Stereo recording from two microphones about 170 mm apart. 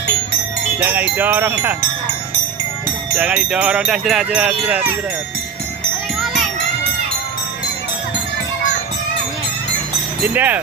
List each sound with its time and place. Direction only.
0.8 s speech: 10° right (ahead or behind)
3.2 s speech: 5° right (ahead or behind)
10.2 s speech: 10° right (ahead or behind)